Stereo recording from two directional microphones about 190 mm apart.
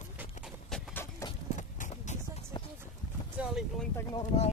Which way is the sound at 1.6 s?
40° left (ahead or behind).